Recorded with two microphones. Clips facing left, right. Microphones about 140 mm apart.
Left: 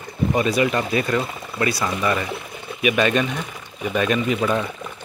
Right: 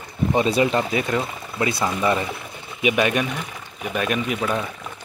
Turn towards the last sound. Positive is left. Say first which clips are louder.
# left 3 dB
turn(degrees=-5)  # may be behind; listen again after turning